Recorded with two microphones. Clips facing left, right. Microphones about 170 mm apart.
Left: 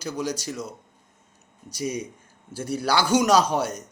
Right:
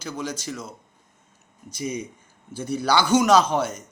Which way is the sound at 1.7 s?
10° left (ahead or behind).